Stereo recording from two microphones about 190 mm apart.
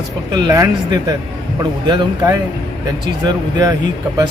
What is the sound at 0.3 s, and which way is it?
A man's voice, 20° right (ahead or behind).